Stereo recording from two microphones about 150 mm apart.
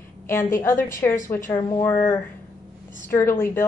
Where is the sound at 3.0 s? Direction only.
15° left (ahead or behind).